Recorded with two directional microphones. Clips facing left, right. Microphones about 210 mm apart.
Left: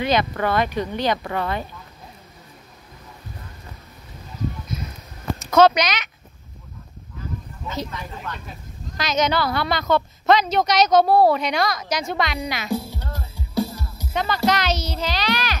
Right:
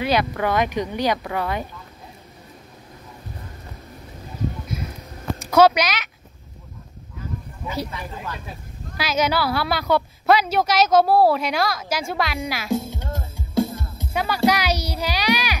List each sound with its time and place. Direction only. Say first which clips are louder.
0.0 s speech: even; 5° right (ahead or behind)
4.7 s a sound: right 1 dB; 10° right (ahead or behind)
5.4 s speech: even; 10° right (ahead or behind)
7.6 s a woman's voice: right 1 dB; 10° right (ahead or behind)
13.1 s music: right 3 dB; 50° right (ahead or behind)
14.1 s speech: right 1 dB; 10° right (ahead or behind)